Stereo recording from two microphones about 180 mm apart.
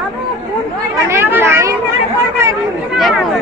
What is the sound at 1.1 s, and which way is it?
Speech, 15° right (ahead or behind).